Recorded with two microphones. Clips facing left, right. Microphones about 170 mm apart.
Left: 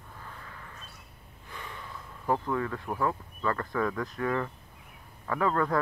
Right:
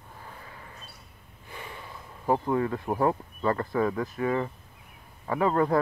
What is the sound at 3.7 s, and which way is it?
A man's voice, 15° right (ahead or behind).